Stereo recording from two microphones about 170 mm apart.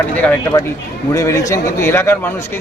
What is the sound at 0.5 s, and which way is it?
Speech, 20° left (ahead or behind).